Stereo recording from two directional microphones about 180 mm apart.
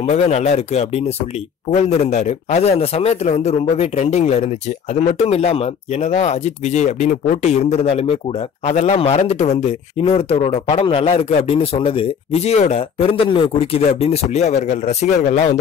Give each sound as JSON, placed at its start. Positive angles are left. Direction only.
{"t": 0.0, "sound": "speech", "side_deg": 40}